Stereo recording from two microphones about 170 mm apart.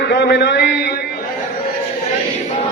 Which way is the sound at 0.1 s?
85° left.